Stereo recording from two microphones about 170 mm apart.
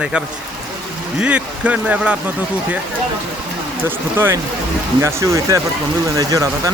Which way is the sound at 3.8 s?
15° right (ahead or behind).